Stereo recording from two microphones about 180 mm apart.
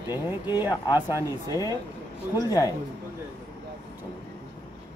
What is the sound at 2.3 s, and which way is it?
Speech, 20° left (ahead or behind).